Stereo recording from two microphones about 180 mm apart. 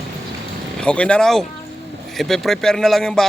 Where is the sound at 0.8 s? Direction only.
5° left (ahead or behind).